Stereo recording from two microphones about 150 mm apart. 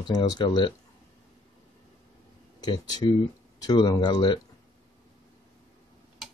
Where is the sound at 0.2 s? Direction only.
30° left (ahead or behind).